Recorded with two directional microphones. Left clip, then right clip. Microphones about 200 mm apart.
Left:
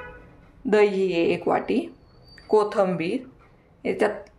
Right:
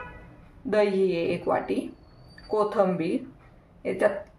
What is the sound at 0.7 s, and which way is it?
Speech, 40° left (ahead or behind).